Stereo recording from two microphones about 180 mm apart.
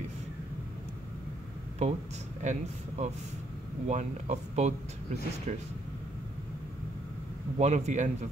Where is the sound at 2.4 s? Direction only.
40° right (ahead or behind).